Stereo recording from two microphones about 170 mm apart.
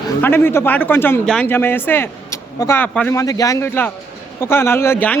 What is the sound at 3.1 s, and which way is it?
A man's voice, 20° left (ahead or behind).